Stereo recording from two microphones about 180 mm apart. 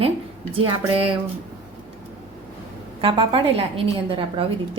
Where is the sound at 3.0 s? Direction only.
30° right (ahead or behind).